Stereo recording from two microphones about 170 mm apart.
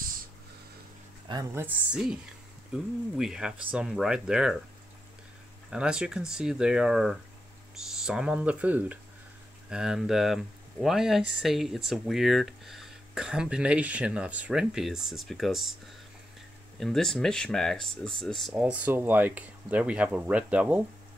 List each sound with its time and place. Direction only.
1.2 s a sound: 25° right (ahead or behind)
1.5 s speech: 10° right (ahead or behind)
5.7 s speech: 5° right (ahead or behind)
16.8 s speech: centre (ahead or behind)
18.5 s speech: 10° right (ahead or behind)